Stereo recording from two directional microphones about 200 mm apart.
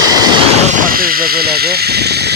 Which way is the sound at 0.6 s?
40° right (ahead or behind).